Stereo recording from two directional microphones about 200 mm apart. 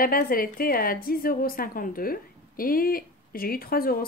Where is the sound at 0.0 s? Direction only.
45° left (ahead or behind).